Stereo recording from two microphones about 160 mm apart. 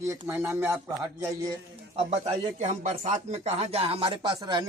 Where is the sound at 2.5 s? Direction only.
50° right (ahead or behind).